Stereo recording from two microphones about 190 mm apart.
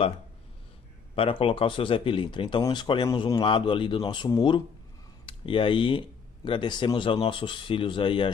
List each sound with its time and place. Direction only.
1.1 s speech: 30° left (ahead or behind)